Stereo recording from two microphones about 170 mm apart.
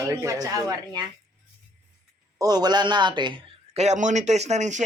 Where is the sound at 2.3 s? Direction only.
25° right (ahead or behind).